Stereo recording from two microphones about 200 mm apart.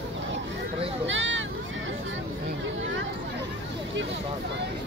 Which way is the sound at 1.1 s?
70° right (ahead or behind).